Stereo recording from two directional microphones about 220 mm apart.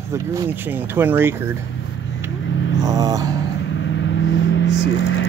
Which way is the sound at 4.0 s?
55° left (ahead or behind).